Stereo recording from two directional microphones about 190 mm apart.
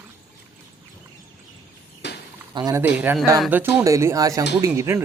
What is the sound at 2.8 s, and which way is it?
Speech, 10° right (ahead or behind).